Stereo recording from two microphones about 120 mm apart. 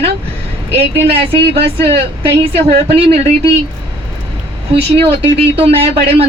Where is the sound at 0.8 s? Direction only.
55° right (ahead or behind).